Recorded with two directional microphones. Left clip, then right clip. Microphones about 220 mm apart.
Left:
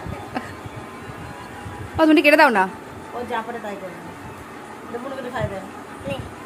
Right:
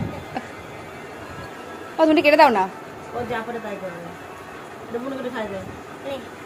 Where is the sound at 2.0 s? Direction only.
20° left (ahead or behind).